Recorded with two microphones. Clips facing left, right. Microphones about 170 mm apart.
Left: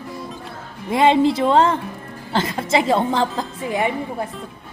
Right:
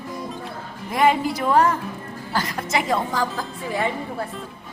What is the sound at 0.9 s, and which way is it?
A woman's voice, 25° left (ahead or behind).